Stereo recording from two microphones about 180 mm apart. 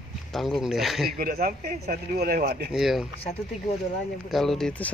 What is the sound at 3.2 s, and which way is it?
Speech, 35° left (ahead or behind).